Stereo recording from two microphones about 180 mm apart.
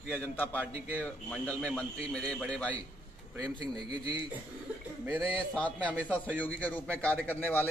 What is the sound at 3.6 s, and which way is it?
Speech, 25° right (ahead or behind).